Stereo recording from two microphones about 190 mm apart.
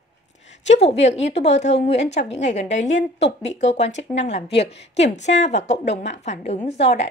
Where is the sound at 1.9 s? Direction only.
35° left (ahead or behind).